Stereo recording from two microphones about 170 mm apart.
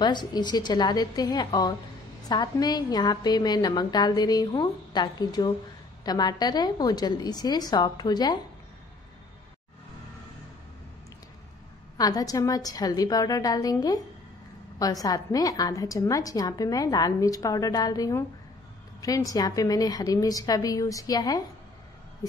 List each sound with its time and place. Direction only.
0.0 s a woman's voice: 25° left (ahead or behind)
12.0 s a woman's voice: 20° left (ahead or behind)